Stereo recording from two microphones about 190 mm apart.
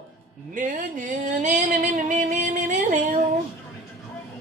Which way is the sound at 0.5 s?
45° right (ahead or behind).